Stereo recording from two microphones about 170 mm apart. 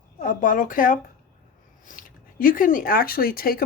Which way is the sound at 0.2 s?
50° left (ahead or behind).